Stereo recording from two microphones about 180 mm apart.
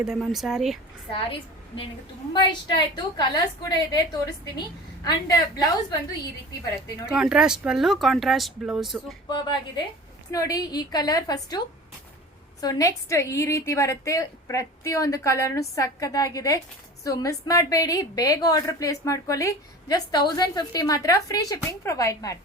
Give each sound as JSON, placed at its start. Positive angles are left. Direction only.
{"t": 0.0, "sound": "speech", "side_deg": 0}
{"t": 1.1, "sound": "a woman's voice", "side_deg": 30}
{"t": 7.1, "sound": "speech", "side_deg": -5}
{"t": 9.3, "sound": "a woman's voice", "side_deg": 25}
{"t": 12.6, "sound": "a woman's voice", "side_deg": 15}